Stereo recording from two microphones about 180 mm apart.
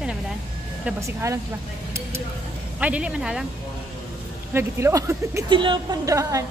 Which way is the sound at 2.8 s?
5° right (ahead or behind).